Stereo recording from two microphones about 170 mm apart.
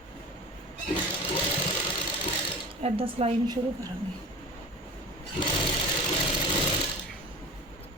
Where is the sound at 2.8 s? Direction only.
35° right (ahead or behind).